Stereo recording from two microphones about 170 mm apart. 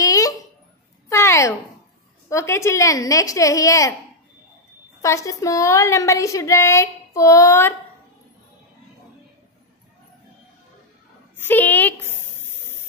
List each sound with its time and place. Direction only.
0.0 s a sound: 20° left (ahead or behind)
2.2 s a woman's voice: 15° left (ahead or behind)
5.0 s a woman's voice: 20° left (ahead or behind)
11.3 s speech: 10° left (ahead or behind)